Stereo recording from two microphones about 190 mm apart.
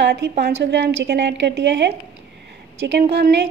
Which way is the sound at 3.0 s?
55° right (ahead or behind).